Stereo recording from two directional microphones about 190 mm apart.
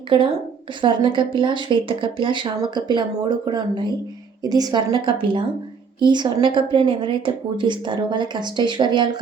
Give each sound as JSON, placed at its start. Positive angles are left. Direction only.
{"t": 0.8, "sound": "a woman's voice", "side_deg": -25}